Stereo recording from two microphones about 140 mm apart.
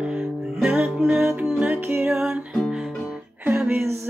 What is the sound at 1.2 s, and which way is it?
Music, 15° right (ahead or behind).